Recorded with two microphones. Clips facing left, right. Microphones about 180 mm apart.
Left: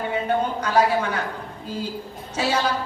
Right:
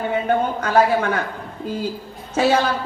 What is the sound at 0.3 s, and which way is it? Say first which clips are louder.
Speech: right 3 dB; 55° right (ahead or behind).